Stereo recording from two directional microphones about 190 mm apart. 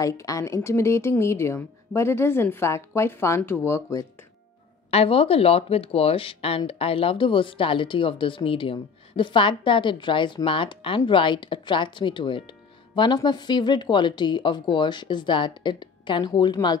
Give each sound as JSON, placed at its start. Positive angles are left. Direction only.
{"t": 0.0, "sound": "speech", "side_deg": 15}
{"t": 4.9, "sound": "speech", "side_deg": 30}